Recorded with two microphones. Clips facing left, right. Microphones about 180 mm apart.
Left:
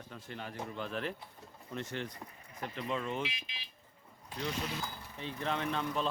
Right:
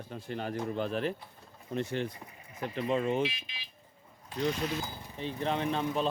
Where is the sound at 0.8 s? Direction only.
30° right (ahead or behind).